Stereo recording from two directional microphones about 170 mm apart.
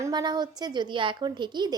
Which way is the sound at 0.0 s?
25° right (ahead or behind).